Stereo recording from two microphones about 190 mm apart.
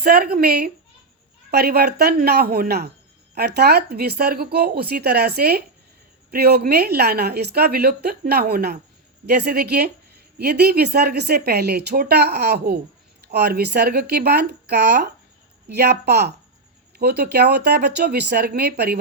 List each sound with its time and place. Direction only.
0.0 s a woman's voice: 55° right (ahead or behind)